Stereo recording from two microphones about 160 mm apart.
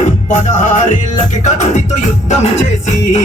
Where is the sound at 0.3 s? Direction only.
50° left (ahead or behind).